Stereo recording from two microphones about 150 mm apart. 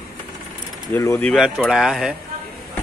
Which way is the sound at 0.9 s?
20° left (ahead or behind).